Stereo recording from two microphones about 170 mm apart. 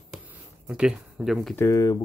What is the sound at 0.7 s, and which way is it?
Speech, centre (ahead or behind).